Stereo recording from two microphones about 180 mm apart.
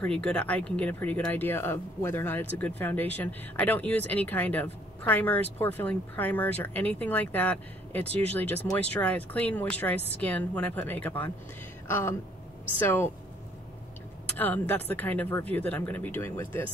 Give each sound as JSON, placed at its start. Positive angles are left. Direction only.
{"t": 0.0, "sound": "speech", "side_deg": 5}
{"t": 14.3, "sound": "speech", "side_deg": 10}